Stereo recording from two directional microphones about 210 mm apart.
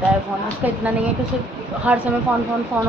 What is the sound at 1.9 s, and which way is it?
Speech, 5° right (ahead or behind).